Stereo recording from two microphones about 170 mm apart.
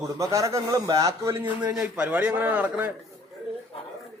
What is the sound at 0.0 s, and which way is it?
A man's voice, 20° right (ahead or behind).